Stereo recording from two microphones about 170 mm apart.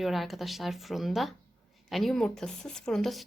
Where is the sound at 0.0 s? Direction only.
Centre (ahead or behind).